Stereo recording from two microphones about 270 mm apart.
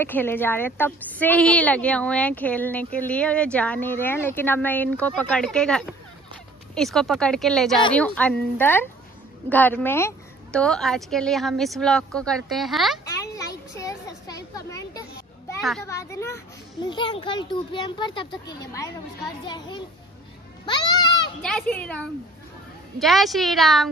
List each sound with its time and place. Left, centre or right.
0.0 s speech: centre
13.1 s a sound: centre
15.8 s a child's voice: centre
21.4 s speech: centre